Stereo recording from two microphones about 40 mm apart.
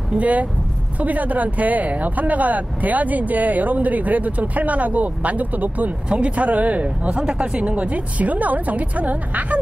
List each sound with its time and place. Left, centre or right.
0.1 s speech: right
6.0 s speech: right
7.2 s speech: right